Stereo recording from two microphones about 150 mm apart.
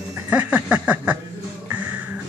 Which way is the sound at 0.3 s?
10° right (ahead or behind).